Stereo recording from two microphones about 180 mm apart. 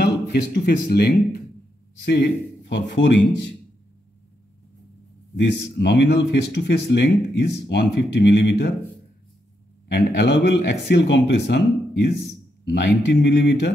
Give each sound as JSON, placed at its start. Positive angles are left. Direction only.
{"t": 0.0, "sound": "speech", "side_deg": 65}
{"t": 5.3, "sound": "speech", "side_deg": 70}
{"t": 9.8, "sound": "speech", "side_deg": 70}